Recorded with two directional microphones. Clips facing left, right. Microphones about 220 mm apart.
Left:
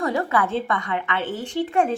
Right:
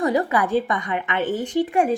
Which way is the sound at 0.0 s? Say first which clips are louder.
Right 2 dB; 15° right (ahead or behind).